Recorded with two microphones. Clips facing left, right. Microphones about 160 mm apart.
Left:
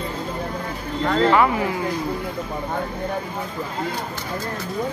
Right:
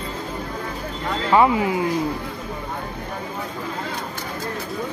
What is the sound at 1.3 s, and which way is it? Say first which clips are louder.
Speech: right 2 dB; 20° right (ahead or behind).